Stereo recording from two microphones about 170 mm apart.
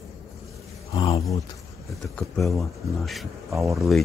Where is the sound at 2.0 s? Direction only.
Centre (ahead or behind).